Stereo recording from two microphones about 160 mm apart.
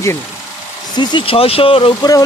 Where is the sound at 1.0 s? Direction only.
35° left (ahead or behind).